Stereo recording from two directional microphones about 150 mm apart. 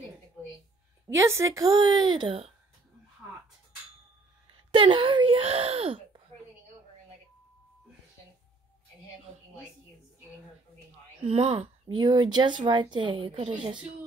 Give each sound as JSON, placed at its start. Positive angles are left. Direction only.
{"t": 1.0, "sound": "a woman's voice", "side_deg": -20}
{"t": 4.6, "sound": "speech", "side_deg": -35}
{"t": 11.1, "sound": "speech", "side_deg": -40}